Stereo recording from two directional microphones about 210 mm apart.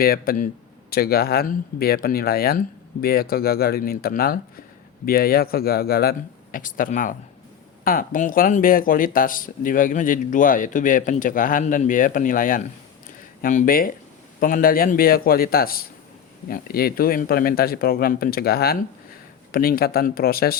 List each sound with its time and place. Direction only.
0.0 s speech: 45° left (ahead or behind)